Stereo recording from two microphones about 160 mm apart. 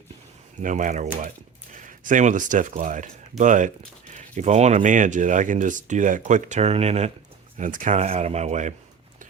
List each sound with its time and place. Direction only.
0.6 s speech: 55° right (ahead or behind)
7.6 s speech: 55° right (ahead or behind)